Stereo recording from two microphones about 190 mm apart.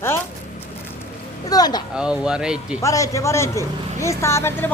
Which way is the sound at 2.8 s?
15° left (ahead or behind).